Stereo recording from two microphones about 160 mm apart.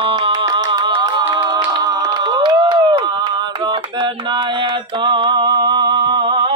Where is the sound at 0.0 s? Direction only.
30° right (ahead or behind).